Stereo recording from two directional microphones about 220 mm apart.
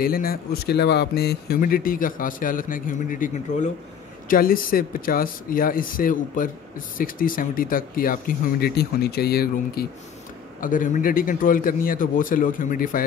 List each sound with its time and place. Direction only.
0.0 s speech: 40° left (ahead or behind)